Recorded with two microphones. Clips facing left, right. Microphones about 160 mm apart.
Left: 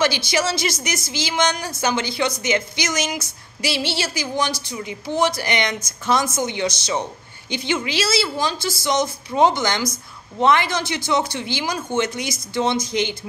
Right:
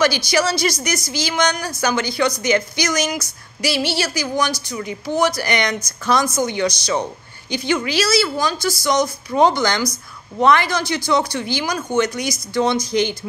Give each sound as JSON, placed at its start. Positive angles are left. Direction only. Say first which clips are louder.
{"t": 0.0, "sound": "a woman's voice", "louder": "right 3 dB", "side_deg": 25}